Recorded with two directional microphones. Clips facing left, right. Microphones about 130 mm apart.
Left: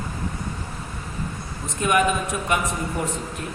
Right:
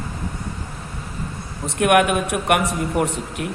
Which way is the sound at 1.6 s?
65° right (ahead or behind).